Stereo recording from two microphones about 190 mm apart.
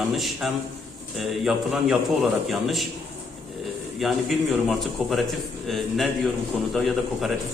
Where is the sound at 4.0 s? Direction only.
Centre (ahead or behind).